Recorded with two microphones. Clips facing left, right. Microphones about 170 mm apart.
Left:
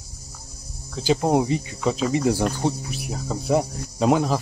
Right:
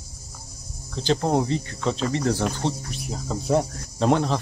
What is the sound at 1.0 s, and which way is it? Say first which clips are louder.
Speech: left 2 dB; 10° left (ahead or behind).